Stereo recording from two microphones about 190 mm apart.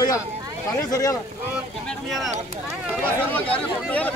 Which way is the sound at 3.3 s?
10° left (ahead or behind).